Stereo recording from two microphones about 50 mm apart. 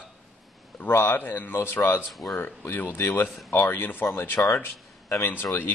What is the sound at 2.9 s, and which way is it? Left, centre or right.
Speech, left.